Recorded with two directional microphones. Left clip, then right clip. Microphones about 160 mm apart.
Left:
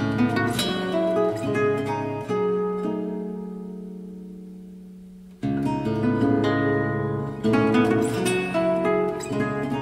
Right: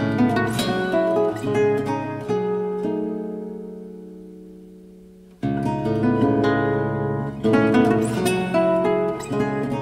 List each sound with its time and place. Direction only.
0.0 s music: 20° right (ahead or behind)
5.4 s guitar: 20° right (ahead or behind)
7.0 s music: 25° right (ahead or behind)